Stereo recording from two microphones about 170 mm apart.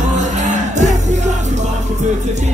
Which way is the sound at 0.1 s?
45° right (ahead or behind).